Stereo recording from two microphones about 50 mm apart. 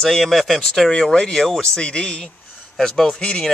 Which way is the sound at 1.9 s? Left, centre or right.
Left.